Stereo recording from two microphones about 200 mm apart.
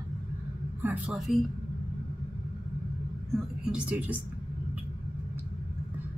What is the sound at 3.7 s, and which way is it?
Speech, 5° right (ahead or behind).